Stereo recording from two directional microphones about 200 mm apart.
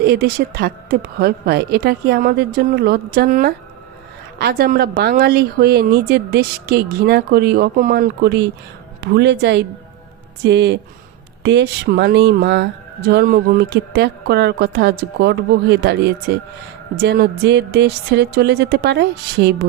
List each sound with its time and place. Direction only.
0.0 s a woman's voice: 50° right (ahead or behind)